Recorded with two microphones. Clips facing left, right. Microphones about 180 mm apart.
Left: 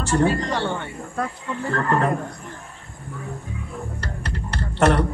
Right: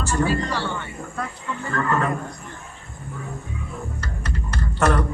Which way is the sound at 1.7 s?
30° left (ahead or behind).